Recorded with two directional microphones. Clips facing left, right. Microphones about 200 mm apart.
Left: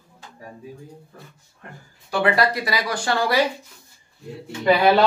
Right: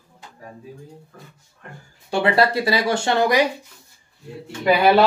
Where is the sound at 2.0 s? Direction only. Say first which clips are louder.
Right 2 dB; 25° right (ahead or behind).